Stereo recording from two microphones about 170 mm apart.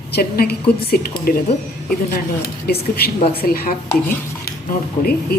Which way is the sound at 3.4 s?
60° left (ahead or behind).